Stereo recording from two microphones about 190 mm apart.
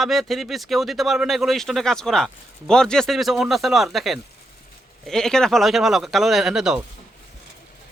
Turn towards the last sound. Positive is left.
turn(degrees=-5)  # may be behind; listen again after turning